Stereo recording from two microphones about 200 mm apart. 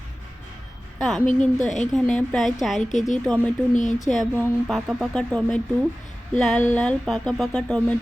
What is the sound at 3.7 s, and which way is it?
Speech, 40° left (ahead or behind).